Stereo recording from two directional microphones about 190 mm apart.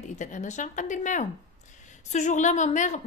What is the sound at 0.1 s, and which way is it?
A woman's voice, 40° left (ahead or behind).